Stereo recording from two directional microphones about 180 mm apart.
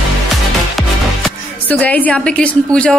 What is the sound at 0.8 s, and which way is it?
Music, centre (ahead or behind).